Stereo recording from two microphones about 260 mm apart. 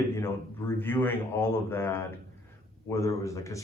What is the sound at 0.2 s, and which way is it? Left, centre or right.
Speech, centre.